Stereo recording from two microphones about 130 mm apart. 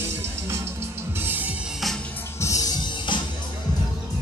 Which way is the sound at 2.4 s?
25° left (ahead or behind).